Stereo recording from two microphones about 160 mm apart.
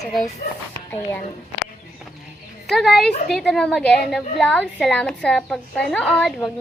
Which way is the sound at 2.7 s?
Centre (ahead or behind).